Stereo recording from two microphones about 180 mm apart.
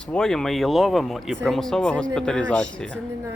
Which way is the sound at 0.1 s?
5° left (ahead or behind).